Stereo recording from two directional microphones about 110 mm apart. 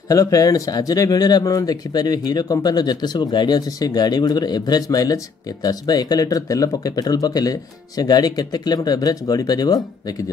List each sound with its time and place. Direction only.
0.1 s speech: 35° left (ahead or behind)